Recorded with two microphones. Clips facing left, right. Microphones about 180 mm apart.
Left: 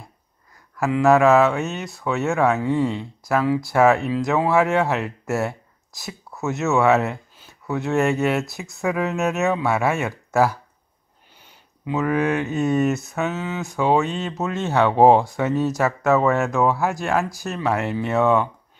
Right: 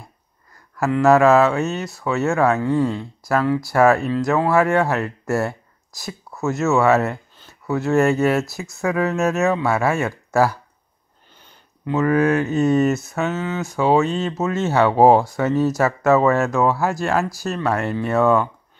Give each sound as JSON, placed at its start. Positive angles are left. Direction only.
{"t": 0.7, "sound": "speech", "side_deg": 0}
{"t": 2.6, "sound": "speech", "side_deg": 15}
{"t": 3.3, "sound": "speech", "side_deg": 5}
{"t": 11.8, "sound": "speech", "side_deg": 0}